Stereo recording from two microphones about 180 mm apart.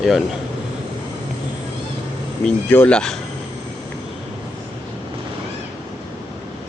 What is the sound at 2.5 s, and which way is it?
Speech, 5° left (ahead or behind).